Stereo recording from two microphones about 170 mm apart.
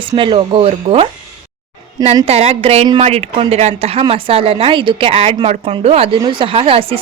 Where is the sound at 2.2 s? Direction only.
35° right (ahead or behind).